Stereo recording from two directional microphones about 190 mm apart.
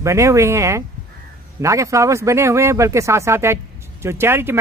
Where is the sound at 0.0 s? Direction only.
15° right (ahead or behind).